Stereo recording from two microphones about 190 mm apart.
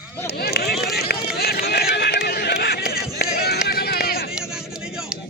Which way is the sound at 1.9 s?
60° left (ahead or behind).